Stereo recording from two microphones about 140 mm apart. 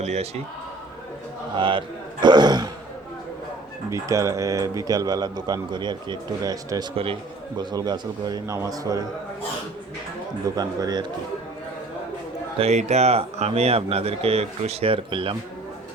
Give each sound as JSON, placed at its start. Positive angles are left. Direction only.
{"t": 0.0, "sound": "a man's voice", "side_deg": -55}
{"t": 1.5, "sound": "throat clearing", "side_deg": -35}
{"t": 3.8, "sound": "speech", "side_deg": -20}
{"t": 6.9, "sound": "speech", "side_deg": -40}
{"t": 10.4, "sound": "speech", "side_deg": -25}
{"t": 12.5, "sound": "speech", "side_deg": -50}